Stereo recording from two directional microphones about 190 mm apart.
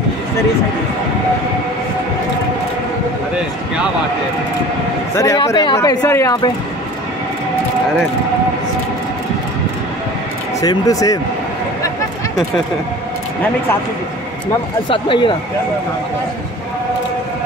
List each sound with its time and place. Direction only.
5.1 s a man's voice: 15° left (ahead or behind)
10.6 s speech: 20° left (ahead or behind)
14.9 s speech: 25° left (ahead or behind)